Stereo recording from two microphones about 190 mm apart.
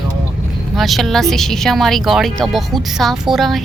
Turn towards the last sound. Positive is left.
turn(degrees=0)  # may be behind; listen again after turning